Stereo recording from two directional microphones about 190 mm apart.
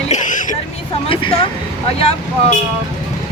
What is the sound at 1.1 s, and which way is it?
Speech, 30° left (ahead or behind).